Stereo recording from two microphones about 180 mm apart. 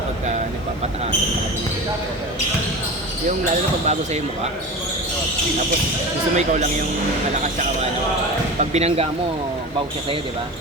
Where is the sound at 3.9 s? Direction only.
40° right (ahead or behind).